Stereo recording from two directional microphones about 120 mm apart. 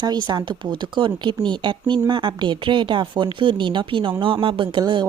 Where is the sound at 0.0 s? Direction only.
35° right (ahead or behind).